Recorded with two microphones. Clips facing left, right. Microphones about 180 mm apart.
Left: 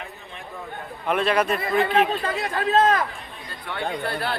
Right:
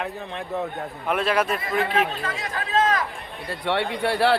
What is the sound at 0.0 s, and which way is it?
Speech, 70° right (ahead or behind).